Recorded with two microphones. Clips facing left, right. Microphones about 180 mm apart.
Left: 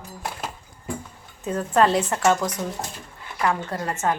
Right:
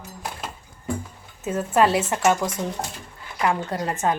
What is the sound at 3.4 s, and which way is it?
Speech, 20° right (ahead or behind).